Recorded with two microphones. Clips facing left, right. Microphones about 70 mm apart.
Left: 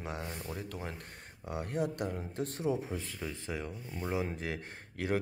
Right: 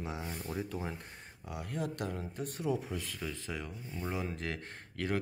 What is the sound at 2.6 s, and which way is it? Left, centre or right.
Speech, left.